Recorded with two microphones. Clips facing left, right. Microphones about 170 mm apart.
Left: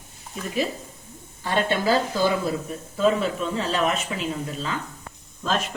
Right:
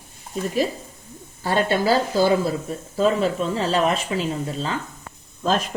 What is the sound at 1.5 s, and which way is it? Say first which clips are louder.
Speech: right 3 dB; 40° right (ahead or behind).